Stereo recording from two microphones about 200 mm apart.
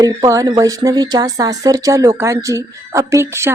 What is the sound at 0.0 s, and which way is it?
A woman's voice, 15° right (ahead or behind).